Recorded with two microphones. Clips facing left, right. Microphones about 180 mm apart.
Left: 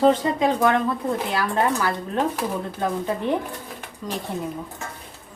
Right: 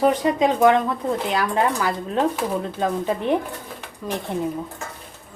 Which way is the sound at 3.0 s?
20° right (ahead or behind).